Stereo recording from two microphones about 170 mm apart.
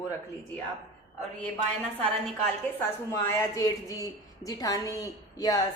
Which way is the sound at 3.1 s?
15° left (ahead or behind).